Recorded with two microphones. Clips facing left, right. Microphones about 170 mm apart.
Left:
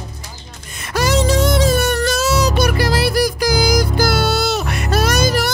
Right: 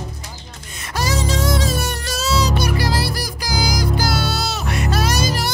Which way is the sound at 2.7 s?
60° left (ahead or behind).